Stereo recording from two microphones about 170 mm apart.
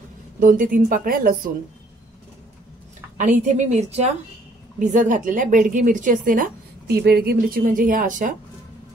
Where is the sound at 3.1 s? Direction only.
45° right (ahead or behind).